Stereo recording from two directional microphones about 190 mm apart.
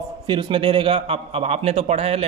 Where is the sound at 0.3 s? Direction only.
25° right (ahead or behind).